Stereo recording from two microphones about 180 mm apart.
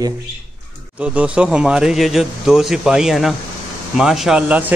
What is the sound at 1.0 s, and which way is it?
A man's voice, 5° right (ahead or behind).